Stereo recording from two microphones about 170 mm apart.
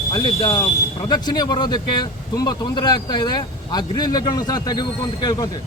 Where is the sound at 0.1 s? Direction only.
20° left (ahead or behind).